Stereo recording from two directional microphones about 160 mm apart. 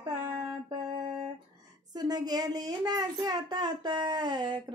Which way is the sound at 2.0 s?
25° right (ahead or behind).